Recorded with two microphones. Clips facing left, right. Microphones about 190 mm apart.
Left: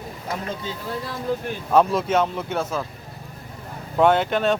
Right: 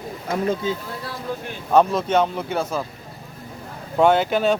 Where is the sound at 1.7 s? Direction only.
5° left (ahead or behind).